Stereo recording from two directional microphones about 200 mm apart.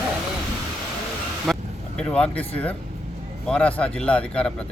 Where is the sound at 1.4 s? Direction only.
Centre (ahead or behind).